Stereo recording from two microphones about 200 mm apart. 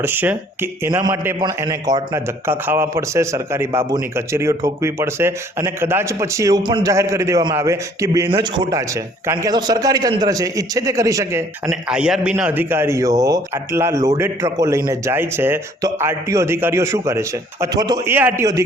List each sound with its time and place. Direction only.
0.0 s a man's voice: 10° right (ahead or behind)